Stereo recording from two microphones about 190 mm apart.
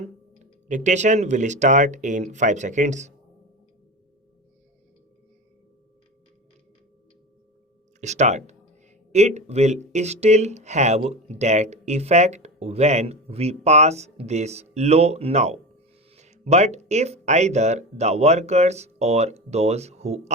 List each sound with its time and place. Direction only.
0.7 s speech: 40° right (ahead or behind)
8.0 s speech: 35° right (ahead or behind)